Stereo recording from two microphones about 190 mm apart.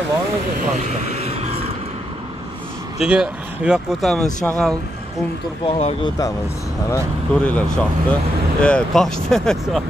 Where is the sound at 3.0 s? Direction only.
5° right (ahead or behind).